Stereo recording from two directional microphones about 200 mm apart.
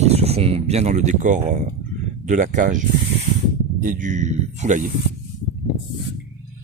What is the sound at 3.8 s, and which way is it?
Speech, 40° right (ahead or behind).